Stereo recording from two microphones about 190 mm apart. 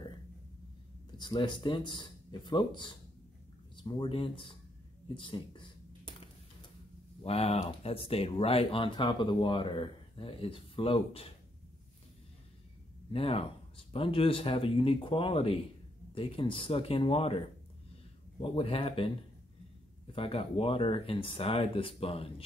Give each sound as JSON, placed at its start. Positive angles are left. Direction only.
{"t": 1.1, "sound": "speech", "side_deg": 20}
{"t": 5.0, "sound": "computer keyboard", "side_deg": 25}
{"t": 7.2, "sound": "speech", "side_deg": 30}
{"t": 13.1, "sound": "speech", "side_deg": 30}